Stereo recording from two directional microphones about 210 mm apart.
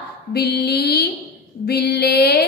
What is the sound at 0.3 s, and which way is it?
A woman's voice, 50° left (ahead or behind).